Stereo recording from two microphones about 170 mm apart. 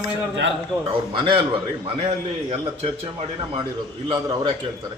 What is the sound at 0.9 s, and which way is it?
A man's voice, 30° right (ahead or behind).